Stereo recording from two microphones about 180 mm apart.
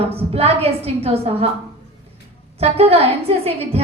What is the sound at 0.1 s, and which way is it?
A woman's voice, 35° right (ahead or behind).